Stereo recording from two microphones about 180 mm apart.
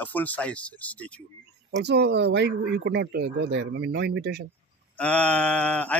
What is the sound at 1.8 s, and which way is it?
Speech, 70° right (ahead or behind).